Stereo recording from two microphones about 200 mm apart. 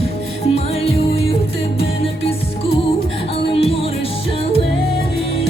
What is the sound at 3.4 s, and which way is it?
Music, 30° left (ahead or behind).